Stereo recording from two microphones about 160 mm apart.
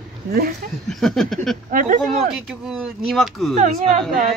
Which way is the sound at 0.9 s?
Centre (ahead or behind).